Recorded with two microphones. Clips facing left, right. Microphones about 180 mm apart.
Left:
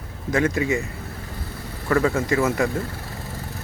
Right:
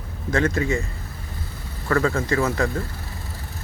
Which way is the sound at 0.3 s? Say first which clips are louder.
Left 1 dB; 15° left (ahead or behind).